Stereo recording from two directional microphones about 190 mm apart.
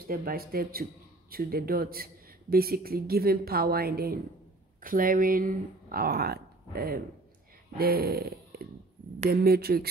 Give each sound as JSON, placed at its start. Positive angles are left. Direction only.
{"t": 0.0, "sound": "speech", "side_deg": -50}
{"t": 7.7, "sound": "a sound", "side_deg": -55}
{"t": 9.3, "sound": "speech", "side_deg": -55}